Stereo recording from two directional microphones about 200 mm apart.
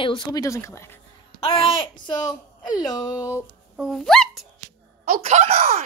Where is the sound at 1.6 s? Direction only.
25° left (ahead or behind).